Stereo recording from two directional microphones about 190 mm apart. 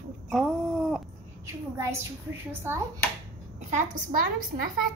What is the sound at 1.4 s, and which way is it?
Speech, 15° right (ahead or behind).